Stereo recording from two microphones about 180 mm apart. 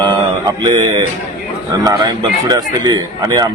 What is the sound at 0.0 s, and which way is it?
Mantra, 25° right (ahead or behind).